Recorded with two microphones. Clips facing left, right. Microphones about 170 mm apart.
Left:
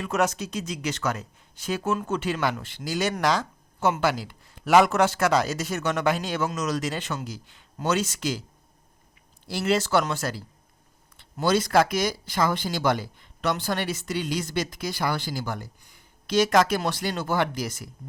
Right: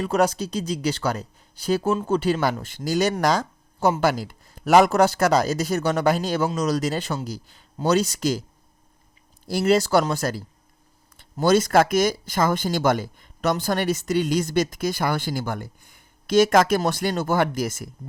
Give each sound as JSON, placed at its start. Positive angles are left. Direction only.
{"t": 0.0, "sound": "speech", "side_deg": -35}
{"t": 9.5, "sound": "speech", "side_deg": -40}